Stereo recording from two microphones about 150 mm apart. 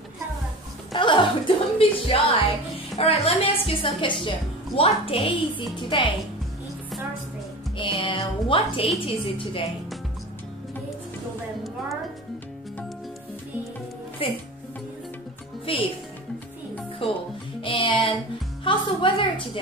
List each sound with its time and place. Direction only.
0.9 s music: 35° left (ahead or behind)
1.8 s a woman's voice: 35° left (ahead or behind)
7.7 s a woman's voice: 35° left (ahead or behind)
14.2 s a woman's voice: 40° left (ahead or behind)
15.6 s speech: 35° left (ahead or behind)
17.0 s a woman's voice: 35° left (ahead or behind)
17.6 s music: 35° left (ahead or behind)
18.6 s a woman's voice: 35° left (ahead or behind)